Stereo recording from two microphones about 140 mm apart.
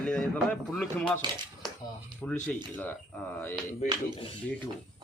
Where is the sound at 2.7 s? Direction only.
10° left (ahead or behind).